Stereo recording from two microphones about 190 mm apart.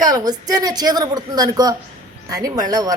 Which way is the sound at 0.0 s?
20° right (ahead or behind).